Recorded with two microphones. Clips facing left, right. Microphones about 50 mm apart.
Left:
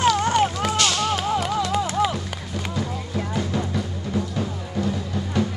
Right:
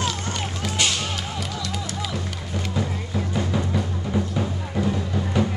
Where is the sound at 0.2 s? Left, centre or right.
Left.